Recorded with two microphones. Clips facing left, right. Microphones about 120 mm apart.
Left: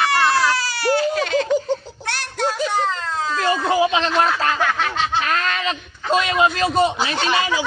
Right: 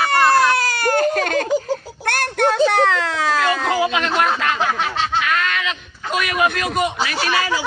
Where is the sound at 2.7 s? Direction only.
70° right (ahead or behind).